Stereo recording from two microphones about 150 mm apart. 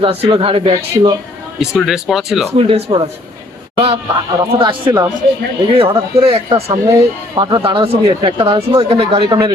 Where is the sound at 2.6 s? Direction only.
40° right (ahead or behind).